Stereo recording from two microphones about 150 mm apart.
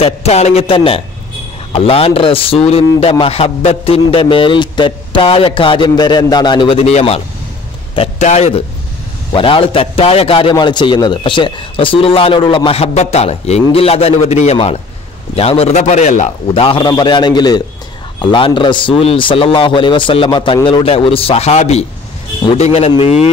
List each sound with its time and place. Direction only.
0.0 s a man's voice: 45° left (ahead or behind)
9.3 s a man's voice: 35° left (ahead or behind)
16.6 s a man's voice: 30° left (ahead or behind)